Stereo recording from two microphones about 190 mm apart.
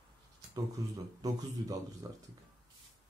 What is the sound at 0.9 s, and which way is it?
Speech, 20° right (ahead or behind).